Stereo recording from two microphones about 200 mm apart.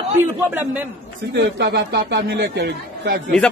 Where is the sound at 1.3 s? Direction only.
60° right (ahead or behind).